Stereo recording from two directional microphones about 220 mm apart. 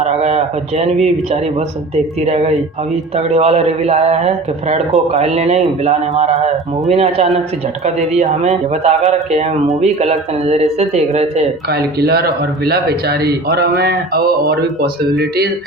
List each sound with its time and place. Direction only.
0.0 s a sound: 30° right (ahead or behind)
2.2 s speech: 30° right (ahead or behind)
11.9 s speech: 45° right (ahead or behind)